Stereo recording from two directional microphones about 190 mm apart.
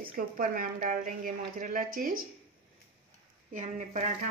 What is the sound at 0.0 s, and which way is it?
Speech, 50° right (ahead or behind).